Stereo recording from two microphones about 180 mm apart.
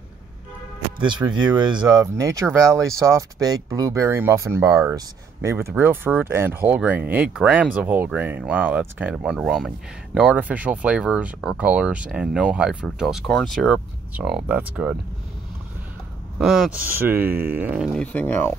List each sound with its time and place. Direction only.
0.9 s speech: 25° right (ahead or behind); by 15.0 s 5° right (ahead or behind)
16.3 s speech: 5° right (ahead or behind)
18.0 s speech: 10° left (ahead or behind)